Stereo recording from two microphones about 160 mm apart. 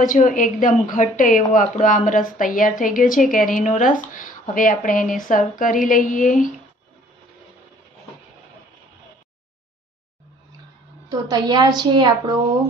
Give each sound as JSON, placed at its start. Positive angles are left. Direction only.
{"t": 0.0, "sound": "speech", "side_deg": 55}
{"t": 11.1, "sound": "a woman's voice", "side_deg": -25}